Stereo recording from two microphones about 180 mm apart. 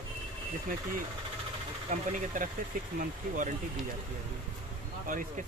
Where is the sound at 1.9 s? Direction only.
45° right (ahead or behind).